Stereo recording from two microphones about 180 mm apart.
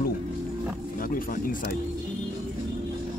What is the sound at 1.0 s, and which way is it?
Speech, 50° left (ahead or behind).